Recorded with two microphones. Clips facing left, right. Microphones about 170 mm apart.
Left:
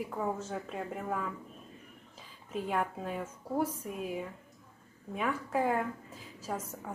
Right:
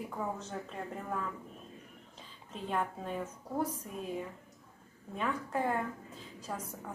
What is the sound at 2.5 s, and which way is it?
A woman's voice, 10° left (ahead or behind).